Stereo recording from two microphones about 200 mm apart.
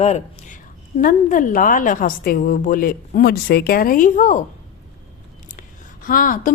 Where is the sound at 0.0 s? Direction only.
35° left (ahead or behind).